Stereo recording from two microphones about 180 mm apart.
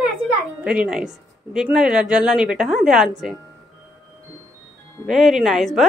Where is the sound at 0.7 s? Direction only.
5° right (ahead or behind).